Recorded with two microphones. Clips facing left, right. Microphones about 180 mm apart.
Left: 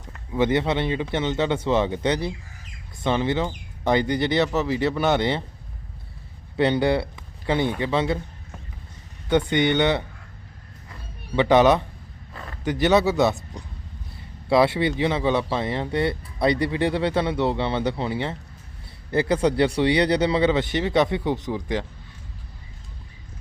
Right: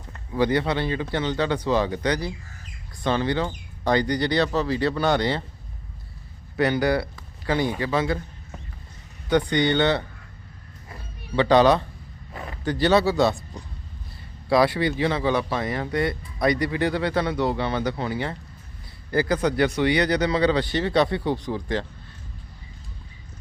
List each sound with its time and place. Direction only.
0.3 s speech: 20° left (ahead or behind)
6.6 s speech: 25° left (ahead or behind)
9.3 s speech: 20° left (ahead or behind)
11.3 s speech: 20° left (ahead or behind)
14.5 s speech: 25° left (ahead or behind)